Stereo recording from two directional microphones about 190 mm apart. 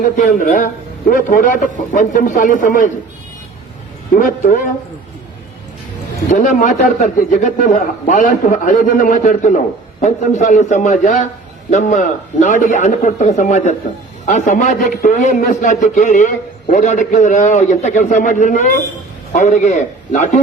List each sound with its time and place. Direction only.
0.0 s a man's voice: 45° left (ahead or behind)
4.1 s a man's voice: 50° left (ahead or behind)
6.3 s a man's voice: 40° left (ahead or behind)